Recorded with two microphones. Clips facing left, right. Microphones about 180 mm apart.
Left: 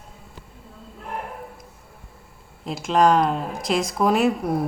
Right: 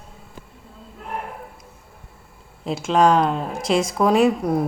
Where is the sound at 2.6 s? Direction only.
Centre (ahead or behind).